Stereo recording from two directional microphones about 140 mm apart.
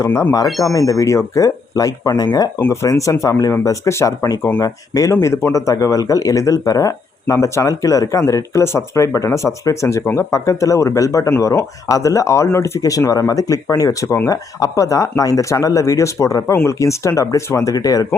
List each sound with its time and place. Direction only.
0.0 s speech: 20° left (ahead or behind)
0.4 s speech: centre (ahead or behind)
0.7 s speech: 25° left (ahead or behind)